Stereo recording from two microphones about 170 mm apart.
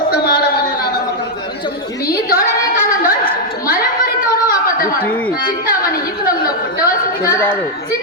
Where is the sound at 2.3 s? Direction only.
55° left (ahead or behind).